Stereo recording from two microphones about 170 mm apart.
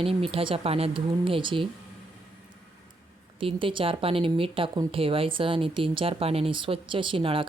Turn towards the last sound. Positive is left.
turn(degrees=-30)  # may be behind; listen again after turning